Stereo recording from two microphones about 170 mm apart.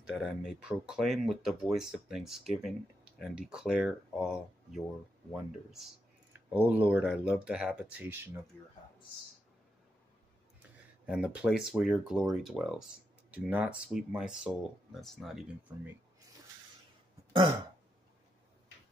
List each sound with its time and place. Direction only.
0.2 s speech: 5° right (ahead or behind)
6.5 s speech: 10° right (ahead or behind)
11.1 s speech: 5° right (ahead or behind)